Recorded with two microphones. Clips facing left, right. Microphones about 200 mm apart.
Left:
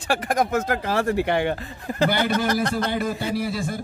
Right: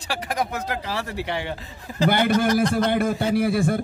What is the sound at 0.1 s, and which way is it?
Speech, 50° left (ahead or behind).